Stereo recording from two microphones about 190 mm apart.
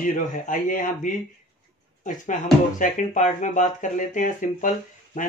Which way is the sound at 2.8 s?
40° left (ahead or behind).